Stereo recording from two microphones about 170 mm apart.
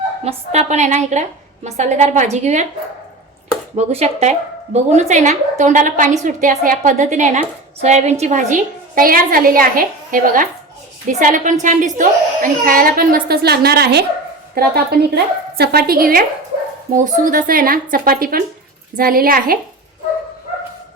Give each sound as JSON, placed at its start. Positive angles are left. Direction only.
{"t": 0.3, "sound": "a woman's voice", "side_deg": -40}
{"t": 3.8, "sound": "a woman's voice", "side_deg": -40}
{"t": 17.2, "sound": "a woman's voice", "side_deg": -50}